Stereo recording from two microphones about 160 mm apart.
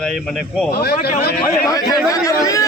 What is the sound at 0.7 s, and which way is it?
Speech, 80° left.